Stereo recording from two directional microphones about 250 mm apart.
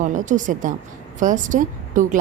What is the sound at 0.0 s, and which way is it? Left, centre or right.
A woman's voice, right.